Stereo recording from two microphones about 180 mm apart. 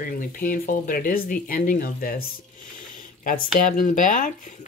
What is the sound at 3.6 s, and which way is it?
Speech, 45° left (ahead or behind).